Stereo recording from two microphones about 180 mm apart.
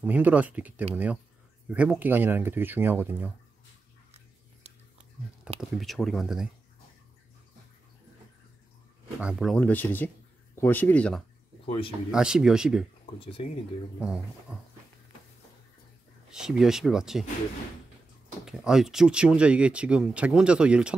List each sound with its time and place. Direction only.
0.0 s speech: 10° right (ahead or behind)
5.6 s speech: centre (ahead or behind)
9.2 s speech: 5° right (ahead or behind)
11.6 s speech: 30° left (ahead or behind)
12.1 s speech: 5° right (ahead or behind)
13.0 s speech: 30° left (ahead or behind)
14.0 s speech: 5° right (ahead or behind)
16.3 s speech: 5° right (ahead or behind)
18.4 s speech: 5° right (ahead or behind)